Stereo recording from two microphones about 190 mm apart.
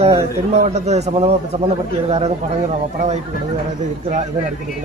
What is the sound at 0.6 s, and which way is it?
A man's voice, 35° right (ahead or behind).